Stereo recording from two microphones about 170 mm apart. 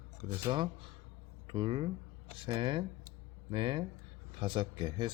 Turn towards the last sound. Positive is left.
turn(degrees=-25)  # may be behind; listen again after turning